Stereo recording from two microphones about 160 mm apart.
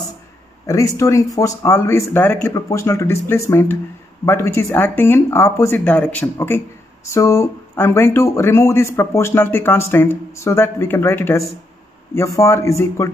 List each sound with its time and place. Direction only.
0.7 s speech: 20° left (ahead or behind)